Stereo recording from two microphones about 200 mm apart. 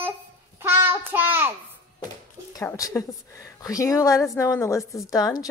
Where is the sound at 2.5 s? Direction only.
15° left (ahead or behind).